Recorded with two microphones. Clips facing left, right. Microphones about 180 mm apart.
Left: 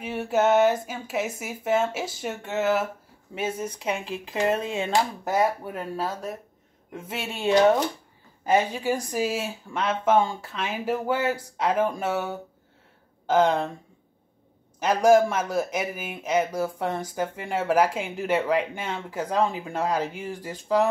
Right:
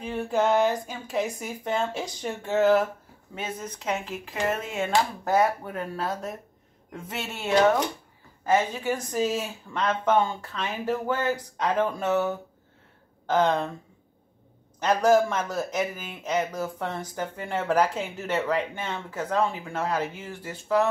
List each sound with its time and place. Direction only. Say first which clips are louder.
0.0 s speech: left 2 dB; 5° left (ahead or behind)
14.8 s speech: left 2 dB; 10° left (ahead or behind)